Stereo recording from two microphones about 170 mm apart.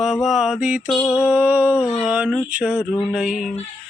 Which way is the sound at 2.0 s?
5° right (ahead or behind).